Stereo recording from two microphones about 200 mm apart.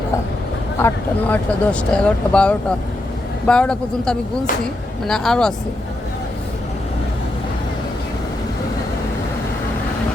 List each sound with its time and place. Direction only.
0.8 s speech: 10° left (ahead or behind)